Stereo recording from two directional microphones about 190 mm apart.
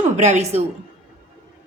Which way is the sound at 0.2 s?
35° right (ahead or behind).